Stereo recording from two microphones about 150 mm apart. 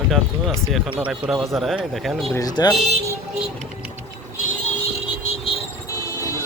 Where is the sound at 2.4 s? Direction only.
25° left (ahead or behind).